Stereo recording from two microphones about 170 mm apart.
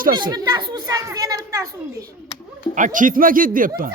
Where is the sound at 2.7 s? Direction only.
50° right (ahead or behind).